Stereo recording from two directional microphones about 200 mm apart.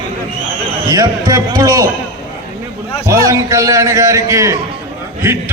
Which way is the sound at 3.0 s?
15° right (ahead or behind).